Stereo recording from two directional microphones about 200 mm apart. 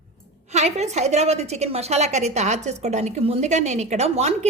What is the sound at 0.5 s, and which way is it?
A woman's voice, 35° right (ahead or behind).